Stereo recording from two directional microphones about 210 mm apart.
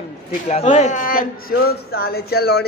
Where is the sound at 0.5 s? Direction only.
30° left (ahead or behind).